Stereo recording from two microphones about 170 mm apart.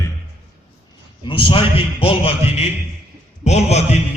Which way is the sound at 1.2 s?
30° left (ahead or behind).